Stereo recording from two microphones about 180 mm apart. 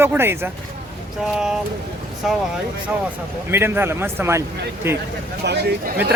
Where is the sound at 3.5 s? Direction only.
10° right (ahead or behind).